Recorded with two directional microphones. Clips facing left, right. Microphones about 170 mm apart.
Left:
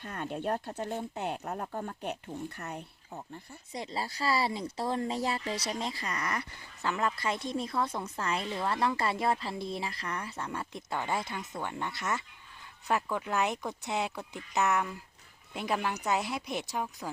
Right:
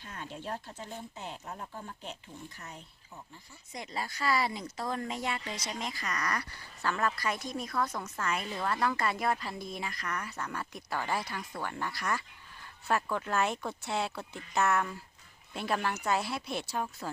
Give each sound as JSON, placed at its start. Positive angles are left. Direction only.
{"t": 0.0, "sound": "speech", "side_deg": 55}
{"t": 3.7, "sound": "speech", "side_deg": 30}